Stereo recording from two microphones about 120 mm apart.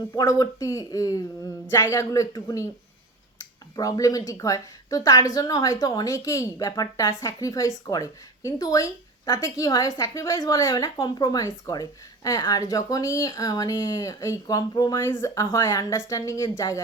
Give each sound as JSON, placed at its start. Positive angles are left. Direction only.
{"t": 0.1, "sound": "a woman's voice", "side_deg": 30}
{"t": 3.8, "sound": "a woman's voice", "side_deg": 30}